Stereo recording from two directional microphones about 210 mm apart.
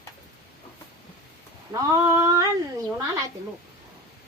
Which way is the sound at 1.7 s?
15° right (ahead or behind).